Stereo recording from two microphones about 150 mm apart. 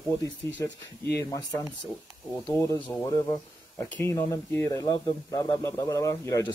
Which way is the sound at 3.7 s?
10° left (ahead or behind).